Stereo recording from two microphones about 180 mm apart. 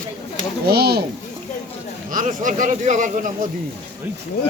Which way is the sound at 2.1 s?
45° right (ahead or behind).